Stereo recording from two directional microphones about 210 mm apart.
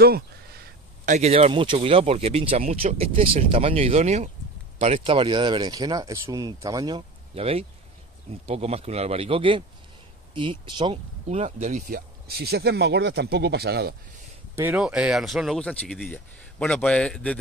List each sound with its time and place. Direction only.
1.0 s speech: 30° right (ahead or behind); by 13.9 s 50° right (ahead or behind)
14.5 s speech: 10° right (ahead or behind)